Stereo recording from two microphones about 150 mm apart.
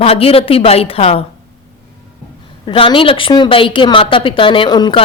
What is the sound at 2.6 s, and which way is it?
A woman's voice, 35° left (ahead or behind).